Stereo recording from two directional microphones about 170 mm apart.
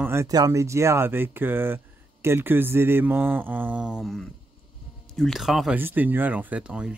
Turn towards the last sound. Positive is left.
turn(degrees=-5)  # may be behind; listen again after turning